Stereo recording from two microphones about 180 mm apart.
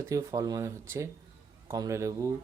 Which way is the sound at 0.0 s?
15° right (ahead or behind).